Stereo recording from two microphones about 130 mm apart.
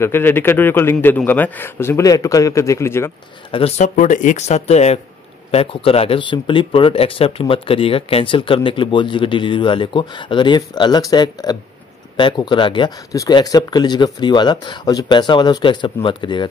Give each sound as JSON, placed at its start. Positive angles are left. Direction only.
{"t": 0.0, "sound": "speech", "side_deg": 15}
{"t": 3.5, "sound": "speech", "side_deg": 50}
{"t": 3.8, "sound": "speech", "side_deg": 75}
{"t": 13.1, "sound": "speech", "side_deg": 30}